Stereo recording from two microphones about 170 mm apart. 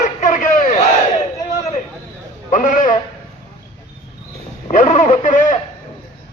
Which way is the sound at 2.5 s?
50° left (ahead or behind).